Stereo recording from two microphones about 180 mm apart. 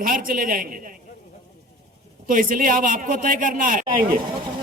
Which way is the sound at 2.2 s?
50° right (ahead or behind).